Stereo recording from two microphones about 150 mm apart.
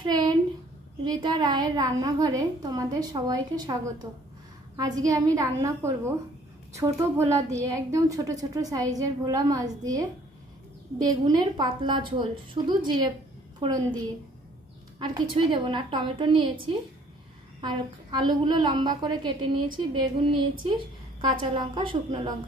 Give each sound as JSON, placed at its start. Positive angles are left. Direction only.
{"t": 0.0, "sound": "a sound", "side_deg": -25}
{"t": 1.0, "sound": "a woman's voice", "side_deg": -30}
{"t": 17.6, "sound": "a woman's voice", "side_deg": -30}